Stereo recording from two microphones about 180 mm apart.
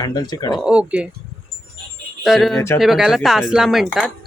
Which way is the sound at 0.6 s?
5° right (ahead or behind).